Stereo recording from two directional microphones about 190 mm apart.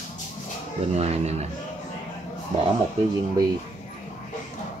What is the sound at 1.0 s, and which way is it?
Speech, 35° right (ahead or behind).